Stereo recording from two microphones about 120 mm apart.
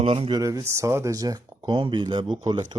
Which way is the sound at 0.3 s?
30° right (ahead or behind).